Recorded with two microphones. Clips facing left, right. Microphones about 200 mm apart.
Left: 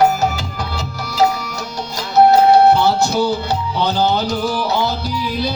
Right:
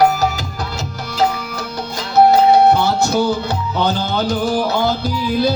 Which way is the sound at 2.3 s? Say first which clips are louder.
Left 1 dB; 55° right (ahead or behind).